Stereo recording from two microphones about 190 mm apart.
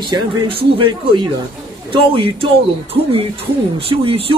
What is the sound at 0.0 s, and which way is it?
Speech, 25° right (ahead or behind).